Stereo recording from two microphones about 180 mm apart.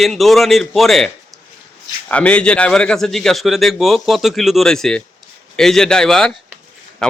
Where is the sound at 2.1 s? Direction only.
5° left (ahead or behind).